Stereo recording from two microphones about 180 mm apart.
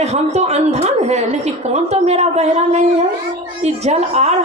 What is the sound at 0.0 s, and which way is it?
A woman's voice, 35° right (ahead or behind).